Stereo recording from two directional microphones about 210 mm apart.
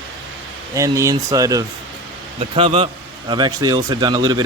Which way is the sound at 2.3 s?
25° right (ahead or behind).